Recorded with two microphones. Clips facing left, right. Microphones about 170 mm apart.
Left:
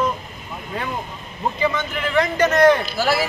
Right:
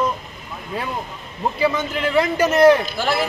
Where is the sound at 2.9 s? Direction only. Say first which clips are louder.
Left 1 dB; 5° left (ahead or behind).